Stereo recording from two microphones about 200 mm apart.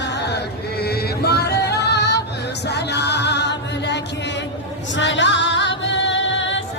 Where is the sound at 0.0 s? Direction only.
55° left (ahead or behind).